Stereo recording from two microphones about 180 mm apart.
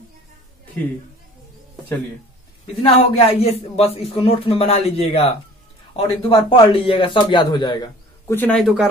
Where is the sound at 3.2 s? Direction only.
35° left (ahead or behind).